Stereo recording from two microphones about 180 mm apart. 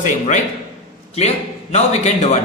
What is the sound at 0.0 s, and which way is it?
A man's voice, 45° left (ahead or behind).